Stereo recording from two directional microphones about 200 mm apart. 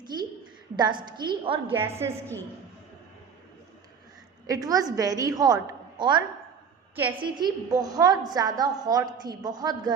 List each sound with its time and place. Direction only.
0.0 s a sound: 20° right (ahead or behind)
0.8 s a woman's voice: 20° right (ahead or behind)
1.7 s a woman's voice: 10° right (ahead or behind)
4.4 s a woman's voice: 15° right (ahead or behind)